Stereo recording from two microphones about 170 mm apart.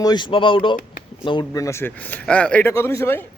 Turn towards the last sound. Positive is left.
turn(degrees=15)  # may be behind; listen again after turning